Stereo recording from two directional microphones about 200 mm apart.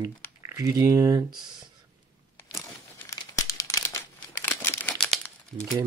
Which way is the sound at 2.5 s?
15° left (ahead or behind).